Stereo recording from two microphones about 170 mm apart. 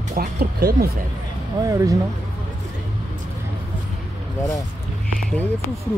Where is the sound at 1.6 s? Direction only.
20° right (ahead or behind).